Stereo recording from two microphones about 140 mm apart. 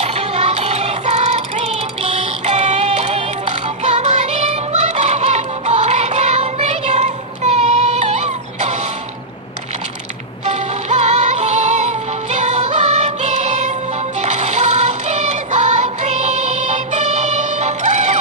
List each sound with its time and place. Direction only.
0.0 s child singing: 50° right (ahead or behind)
10.4 s music: 55° right (ahead or behind)